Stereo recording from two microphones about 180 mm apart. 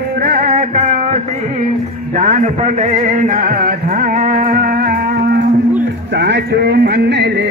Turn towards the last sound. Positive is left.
turn(degrees=-70)  # may be behind; listen again after turning